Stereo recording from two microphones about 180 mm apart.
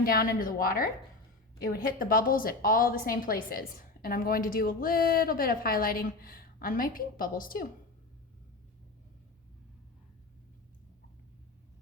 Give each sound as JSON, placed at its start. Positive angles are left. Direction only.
{"t": 0.0, "sound": "a woman's voice", "side_deg": 55}